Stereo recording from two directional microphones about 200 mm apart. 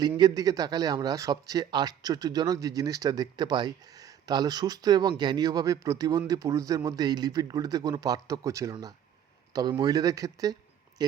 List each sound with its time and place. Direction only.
0.0 s speech: 20° right (ahead or behind)